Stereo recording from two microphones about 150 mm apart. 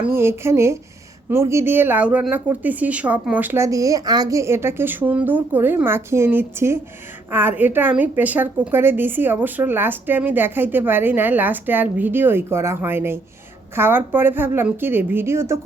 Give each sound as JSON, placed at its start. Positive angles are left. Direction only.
{"t": 0.0, "sound": "a woman's voice", "side_deg": -15}